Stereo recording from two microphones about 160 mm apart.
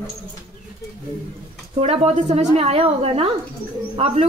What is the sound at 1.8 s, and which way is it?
A woman's voice, 40° right (ahead or behind).